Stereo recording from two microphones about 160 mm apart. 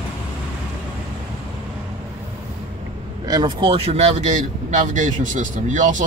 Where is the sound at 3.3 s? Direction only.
25° right (ahead or behind).